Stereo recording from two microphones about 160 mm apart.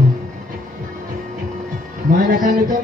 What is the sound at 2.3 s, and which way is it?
Speech, 55° right (ahead or behind).